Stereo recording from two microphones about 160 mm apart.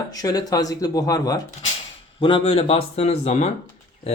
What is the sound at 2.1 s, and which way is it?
Speech, 35° left (ahead or behind).